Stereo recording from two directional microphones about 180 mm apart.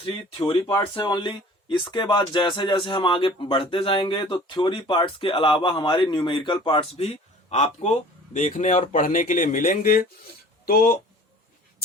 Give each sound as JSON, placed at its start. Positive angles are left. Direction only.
{"t": 0.0, "sound": "speech", "side_deg": 30}